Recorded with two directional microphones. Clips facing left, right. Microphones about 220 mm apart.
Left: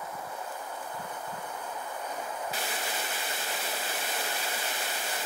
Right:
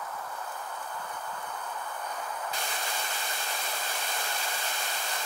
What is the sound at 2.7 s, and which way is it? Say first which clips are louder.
Static: left 1 dB; 20° left (ahead or behind).